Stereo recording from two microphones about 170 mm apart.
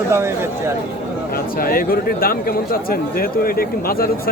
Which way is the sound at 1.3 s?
60° left (ahead or behind).